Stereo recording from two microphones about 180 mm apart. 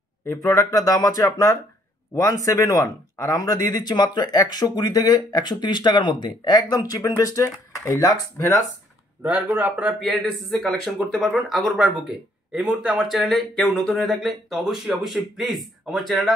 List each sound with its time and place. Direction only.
0.3 s speech: 20° left (ahead or behind)
9.2 s a man's voice: 10° right (ahead or behind)